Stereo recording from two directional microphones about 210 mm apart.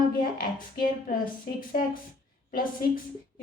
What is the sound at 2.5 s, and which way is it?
Speech, 40° left (ahead or behind).